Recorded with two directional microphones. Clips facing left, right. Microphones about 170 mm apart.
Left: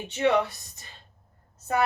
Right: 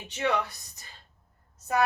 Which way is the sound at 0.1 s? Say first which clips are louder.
Left 5 dB; 25° left (ahead or behind).